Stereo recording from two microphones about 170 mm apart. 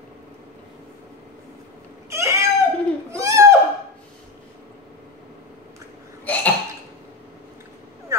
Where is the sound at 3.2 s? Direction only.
15° right (ahead or behind).